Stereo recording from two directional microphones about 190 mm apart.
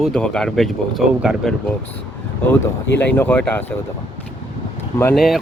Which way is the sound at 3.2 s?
10° left (ahead or behind).